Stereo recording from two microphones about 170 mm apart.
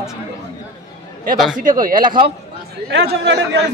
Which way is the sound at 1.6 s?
55° right (ahead or behind).